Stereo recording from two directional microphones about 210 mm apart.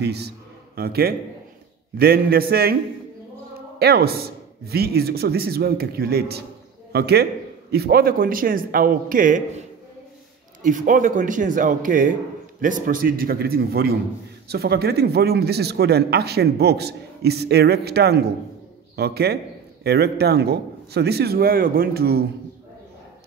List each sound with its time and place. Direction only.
0.0 s a man's voice: 50° right (ahead or behind)